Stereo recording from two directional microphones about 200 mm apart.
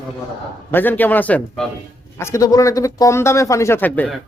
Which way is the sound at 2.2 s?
15° left (ahead or behind).